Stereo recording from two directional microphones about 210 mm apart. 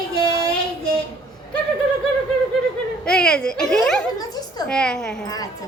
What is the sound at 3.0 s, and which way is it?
A woman's voice, 5° left (ahead or behind).